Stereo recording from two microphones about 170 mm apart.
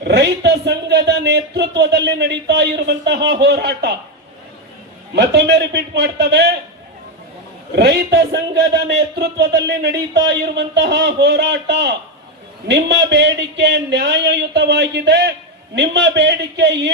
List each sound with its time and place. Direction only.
0.0 s a man's voice: 80° right
3.4 s a man's voice: 80° right
5.1 s a man's voice: 75° right (ahead or behind)
7.8 s a man's voice: 85° right